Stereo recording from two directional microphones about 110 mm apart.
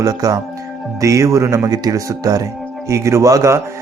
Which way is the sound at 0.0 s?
35° right (ahead or behind).